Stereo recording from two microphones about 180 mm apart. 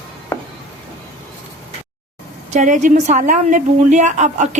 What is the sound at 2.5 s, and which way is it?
A woman's voice, 45° right (ahead or behind).